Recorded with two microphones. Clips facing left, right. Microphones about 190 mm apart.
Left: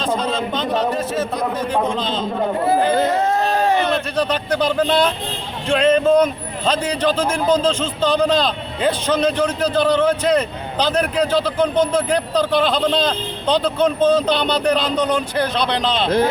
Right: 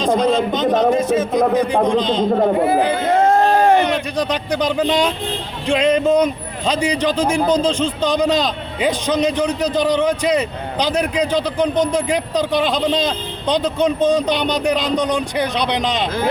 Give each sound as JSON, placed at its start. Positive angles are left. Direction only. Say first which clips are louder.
{"t": 0.0, "sound": "speech", "louder": "right 5 dB", "side_deg": -15}
{"t": 3.2, "sound": "a sound", "louder": "right 5 dB", "side_deg": -50}
{"t": 3.8, "sound": "speech", "louder": "even", "side_deg": -15}